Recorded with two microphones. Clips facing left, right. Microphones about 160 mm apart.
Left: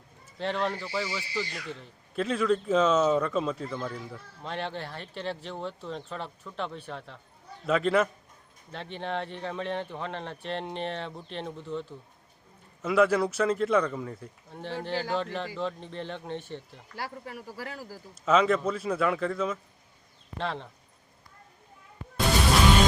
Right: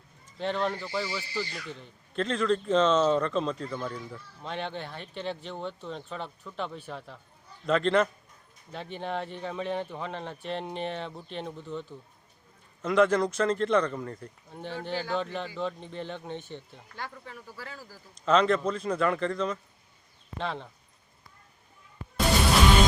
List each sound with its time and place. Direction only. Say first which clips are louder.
0.3 s speech: even; centre (ahead or behind)
16.9 s speech: left 3 dB; 35° left (ahead or behind)
18.1 s speech: even; 5° left (ahead or behind)